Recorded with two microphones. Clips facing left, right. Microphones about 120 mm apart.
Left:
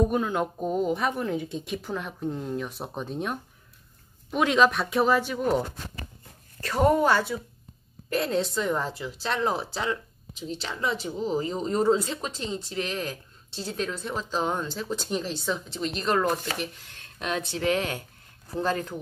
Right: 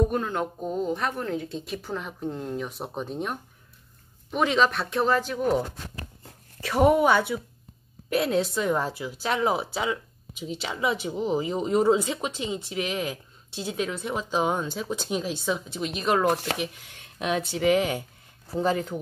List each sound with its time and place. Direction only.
0.0 s speech: 5° left (ahead or behind)
6.6 s speech: 5° right (ahead or behind)
16.3 s speech: 70° right (ahead or behind)
16.5 s speech: 5° right (ahead or behind)